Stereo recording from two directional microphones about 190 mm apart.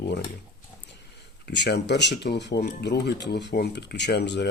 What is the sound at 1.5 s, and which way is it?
Speech, 65° left (ahead or behind).